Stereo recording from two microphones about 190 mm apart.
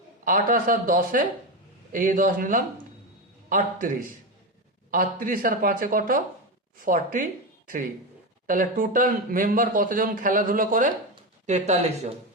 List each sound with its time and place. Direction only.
0.3 s speech: 45° right (ahead or behind)
8.4 s speech: 45° right (ahead or behind)